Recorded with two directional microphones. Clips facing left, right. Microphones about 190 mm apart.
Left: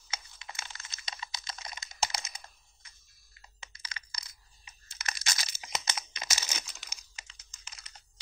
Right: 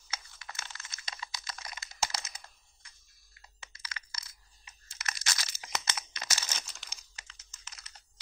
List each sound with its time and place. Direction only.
0.1 s a sound: 20° left (ahead or behind)
3.8 s crushing: 20° left (ahead or behind)
4.6 s crumpling: 20° left (ahead or behind)
7.2 s computer keyboard: 15° left (ahead or behind)